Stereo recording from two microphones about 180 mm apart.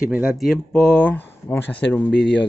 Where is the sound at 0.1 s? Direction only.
5° right (ahead or behind).